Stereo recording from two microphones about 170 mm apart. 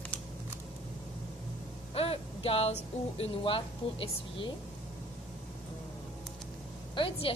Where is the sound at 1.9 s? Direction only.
35° left (ahead or behind).